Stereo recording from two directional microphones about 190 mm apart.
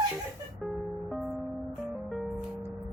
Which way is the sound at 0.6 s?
Centre (ahead or behind).